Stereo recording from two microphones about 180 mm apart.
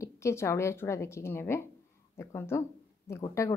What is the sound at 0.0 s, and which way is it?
A woman's voice, 15° left (ahead or behind).